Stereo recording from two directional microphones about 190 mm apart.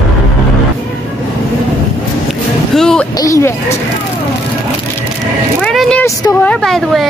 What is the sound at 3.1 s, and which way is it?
Speech, 15° left (ahead or behind).